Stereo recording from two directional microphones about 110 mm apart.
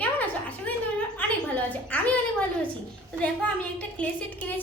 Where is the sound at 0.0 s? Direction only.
15° left (ahead or behind).